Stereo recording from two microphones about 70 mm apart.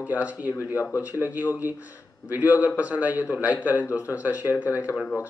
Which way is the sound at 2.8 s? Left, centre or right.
Right.